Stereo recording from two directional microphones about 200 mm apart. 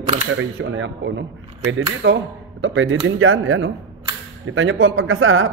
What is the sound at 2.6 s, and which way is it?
Speech, 80° right.